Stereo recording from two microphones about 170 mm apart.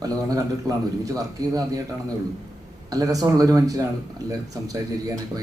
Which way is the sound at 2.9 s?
20° right (ahead or behind).